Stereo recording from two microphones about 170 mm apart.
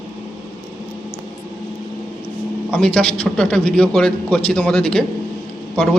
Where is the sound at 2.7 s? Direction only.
5° left (ahead or behind).